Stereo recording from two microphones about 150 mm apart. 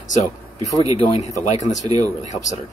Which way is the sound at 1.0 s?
45° left (ahead or behind).